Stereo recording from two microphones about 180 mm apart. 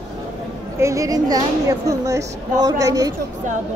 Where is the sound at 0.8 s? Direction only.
15° right (ahead or behind).